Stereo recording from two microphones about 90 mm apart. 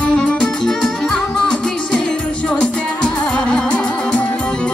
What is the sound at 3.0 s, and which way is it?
Music, 10° left (ahead or behind).